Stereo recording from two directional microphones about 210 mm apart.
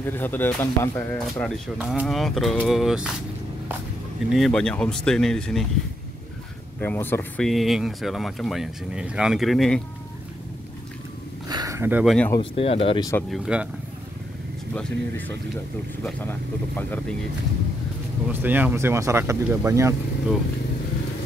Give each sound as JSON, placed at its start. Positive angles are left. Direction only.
{"t": 0.0, "sound": "speech", "side_deg": 10}
{"t": 4.3, "sound": "speech", "side_deg": 0}
{"t": 6.8, "sound": "speech", "side_deg": 10}
{"t": 11.4, "sound": "a sound", "side_deg": -15}
{"t": 12.4, "sound": "speech", "side_deg": 30}
{"t": 13.3, "sound": "speech", "side_deg": -5}
{"t": 14.7, "sound": "speech", "side_deg": 5}
{"t": 18.2, "sound": "speech", "side_deg": -10}